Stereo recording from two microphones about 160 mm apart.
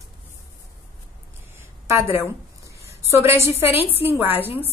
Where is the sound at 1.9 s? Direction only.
15° right (ahead or behind).